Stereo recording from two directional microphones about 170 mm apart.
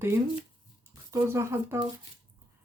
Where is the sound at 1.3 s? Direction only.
15° right (ahead or behind).